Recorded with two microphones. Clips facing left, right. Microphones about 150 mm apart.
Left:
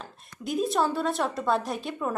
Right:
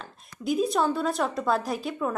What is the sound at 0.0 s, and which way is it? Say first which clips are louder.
A woman's voice: right 4 dB; centre (ahead or behind).